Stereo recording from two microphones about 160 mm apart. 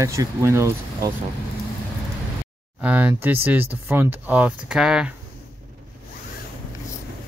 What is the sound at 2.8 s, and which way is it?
Speech, 10° right (ahead or behind).